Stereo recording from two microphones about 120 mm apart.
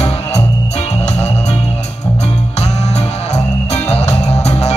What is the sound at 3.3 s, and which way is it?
Music, 65° left (ahead or behind).